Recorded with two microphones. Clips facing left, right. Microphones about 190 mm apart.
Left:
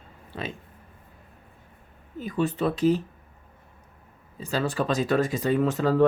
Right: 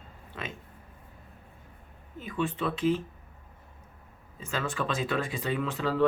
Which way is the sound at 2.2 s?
40° left (ahead or behind).